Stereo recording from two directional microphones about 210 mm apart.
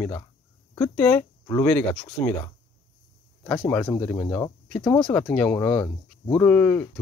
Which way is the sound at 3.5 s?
5° left (ahead or behind).